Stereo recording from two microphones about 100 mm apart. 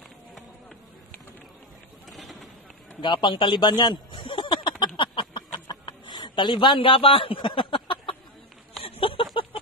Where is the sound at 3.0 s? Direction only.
55° left (ahead or behind).